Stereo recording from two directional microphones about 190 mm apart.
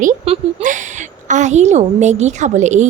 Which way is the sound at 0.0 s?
40° right (ahead or behind).